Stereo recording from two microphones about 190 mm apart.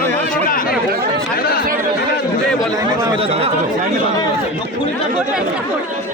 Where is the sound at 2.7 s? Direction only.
20° right (ahead or behind).